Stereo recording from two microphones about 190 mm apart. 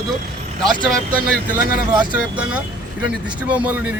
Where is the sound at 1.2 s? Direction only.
50° right (ahead or behind).